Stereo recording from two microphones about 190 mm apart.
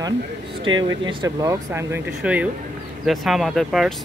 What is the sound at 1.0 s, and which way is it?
Speech, 25° right (ahead or behind).